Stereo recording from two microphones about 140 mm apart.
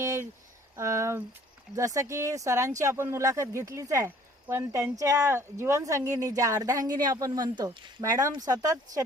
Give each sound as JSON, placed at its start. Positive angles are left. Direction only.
{"t": 0.0, "sound": "speech", "side_deg": -25}